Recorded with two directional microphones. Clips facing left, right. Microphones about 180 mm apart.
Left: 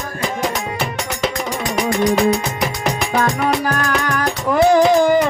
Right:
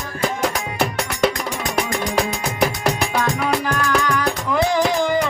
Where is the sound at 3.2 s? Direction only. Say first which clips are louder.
Left 4 dB; 50° left (ahead or behind).